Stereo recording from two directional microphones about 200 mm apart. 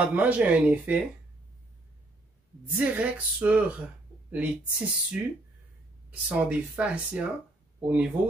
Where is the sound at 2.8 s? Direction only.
10° right (ahead or behind).